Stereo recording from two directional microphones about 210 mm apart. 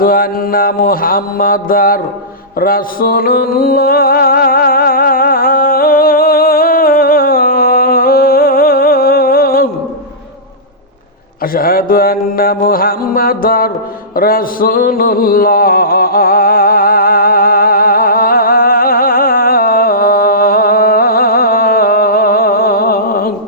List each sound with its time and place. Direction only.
0.0 s mantra: 45° left (ahead or behind)
2.6 s music: 45° left (ahead or behind)
11.5 s mantra: 45° left (ahead or behind)
14.2 s a sound: 45° left (ahead or behind)